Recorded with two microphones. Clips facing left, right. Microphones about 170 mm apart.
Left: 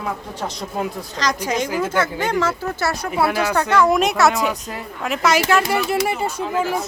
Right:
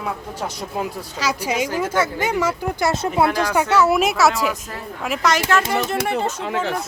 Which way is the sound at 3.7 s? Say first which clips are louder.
Left 1 dB; 5° right (ahead or behind).